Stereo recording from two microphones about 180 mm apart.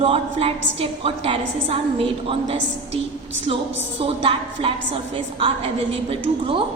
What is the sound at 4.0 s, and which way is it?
A woman's voice, 30° right (ahead or behind).